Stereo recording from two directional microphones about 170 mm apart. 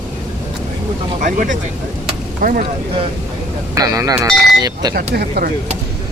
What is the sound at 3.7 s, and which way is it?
Speech, 20° right (ahead or behind).